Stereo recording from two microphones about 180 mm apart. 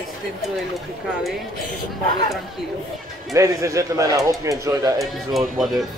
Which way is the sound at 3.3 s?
15° right (ahead or behind).